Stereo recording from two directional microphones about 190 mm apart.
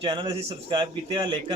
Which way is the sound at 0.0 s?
25° right (ahead or behind).